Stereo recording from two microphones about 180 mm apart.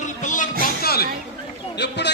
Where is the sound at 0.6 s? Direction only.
60° left (ahead or behind).